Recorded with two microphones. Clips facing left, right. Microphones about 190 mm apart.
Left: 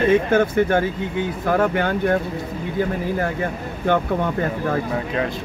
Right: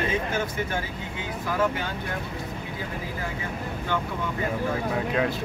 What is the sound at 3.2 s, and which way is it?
Speech, 60° left (ahead or behind).